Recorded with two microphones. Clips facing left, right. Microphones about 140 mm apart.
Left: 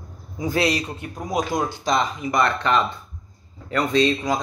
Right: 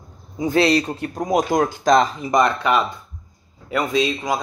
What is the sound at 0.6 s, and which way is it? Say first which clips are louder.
Speech: right 6 dB; 30° right (ahead or behind).